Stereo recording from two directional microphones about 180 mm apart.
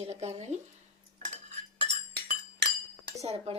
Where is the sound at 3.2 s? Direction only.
35° right (ahead or behind).